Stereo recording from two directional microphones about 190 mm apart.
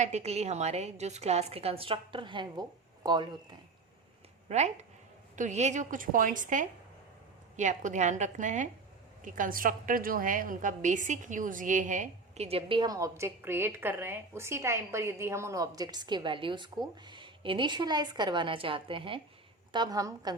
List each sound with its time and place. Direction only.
0.0 s a woman's voice: 35° right (ahead or behind)
4.4 s a woman's voice: 35° right (ahead or behind); by 20.3 s 20° right (ahead or behind)